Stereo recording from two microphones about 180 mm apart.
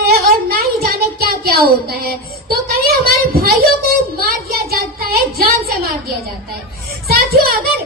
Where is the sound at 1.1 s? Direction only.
60° right (ahead or behind).